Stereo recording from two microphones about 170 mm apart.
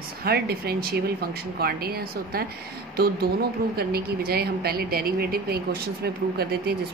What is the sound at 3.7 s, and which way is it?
A woman's voice, 65° right (ahead or behind).